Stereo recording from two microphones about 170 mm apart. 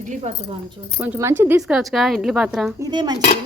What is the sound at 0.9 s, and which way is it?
Speech, 10° right (ahead or behind).